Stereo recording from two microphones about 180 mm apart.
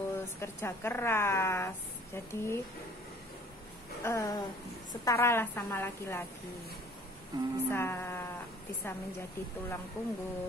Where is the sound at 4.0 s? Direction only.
15° left (ahead or behind).